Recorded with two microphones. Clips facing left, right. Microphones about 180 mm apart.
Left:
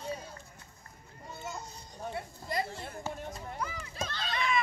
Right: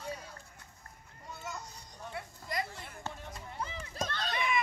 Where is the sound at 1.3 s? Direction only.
25° left (ahead or behind).